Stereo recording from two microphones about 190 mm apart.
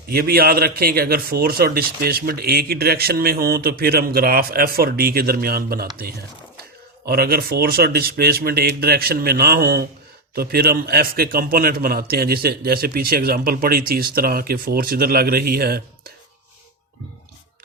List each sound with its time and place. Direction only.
0.1 s a man's voice: 55° right (ahead or behind)
7.0 s a man's voice: 55° right (ahead or behind)